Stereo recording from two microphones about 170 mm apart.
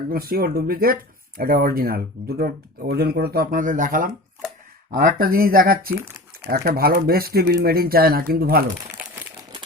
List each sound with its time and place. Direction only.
0.1 s speech: 60° right (ahead or behind)